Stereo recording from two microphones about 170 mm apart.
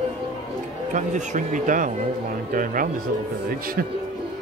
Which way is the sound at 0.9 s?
45° right (ahead or behind).